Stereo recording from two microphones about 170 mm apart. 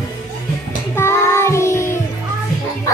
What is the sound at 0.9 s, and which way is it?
Child singing, 15° left (ahead or behind).